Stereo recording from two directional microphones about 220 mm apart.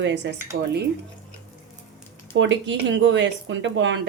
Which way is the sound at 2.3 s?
55° right (ahead or behind).